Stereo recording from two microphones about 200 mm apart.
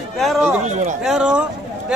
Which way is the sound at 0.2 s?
Centre (ahead or behind).